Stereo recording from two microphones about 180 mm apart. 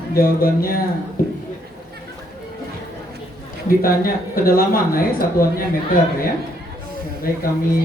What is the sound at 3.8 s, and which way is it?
Speech, 55° left (ahead or behind).